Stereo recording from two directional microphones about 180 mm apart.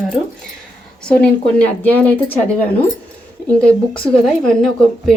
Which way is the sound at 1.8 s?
10° left (ahead or behind).